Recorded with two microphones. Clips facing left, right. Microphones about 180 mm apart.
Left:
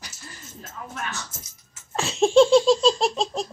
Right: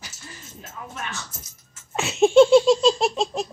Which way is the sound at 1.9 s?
5° right (ahead or behind).